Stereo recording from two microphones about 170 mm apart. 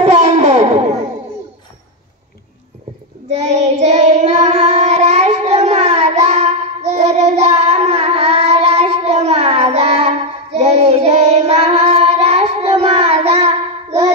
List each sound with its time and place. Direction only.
0.0 s music: 45° right (ahead or behind)
3.3 s child singing: 40° right (ahead or behind)